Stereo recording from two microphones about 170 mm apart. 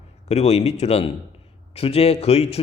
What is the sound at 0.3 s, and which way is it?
Speech, 40° left (ahead or behind).